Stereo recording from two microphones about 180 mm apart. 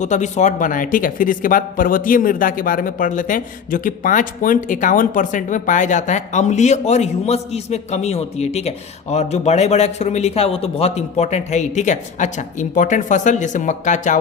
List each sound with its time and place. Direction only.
0.0 s speech: 40° left (ahead or behind)